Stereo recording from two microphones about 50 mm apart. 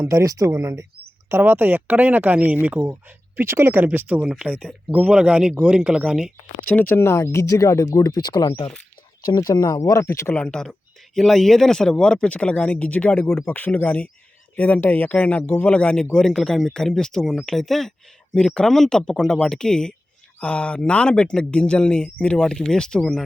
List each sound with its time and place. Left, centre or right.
0.0 s speech: right
1.4 s speech: right
3.4 s speech: right
4.3 s speech: right
6.6 s speech: left
6.8 s speech: left
9.7 s speech: left
10.3 s speech: left
10.7 s speech: centre; by 13.2 s left
13.2 s speech: left
13.5 s speech: left
15.6 s speech: left
16.1 s speech: centre
22.4 s speech: centre